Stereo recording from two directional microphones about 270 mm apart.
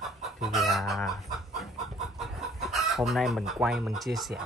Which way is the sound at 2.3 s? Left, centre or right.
Centre.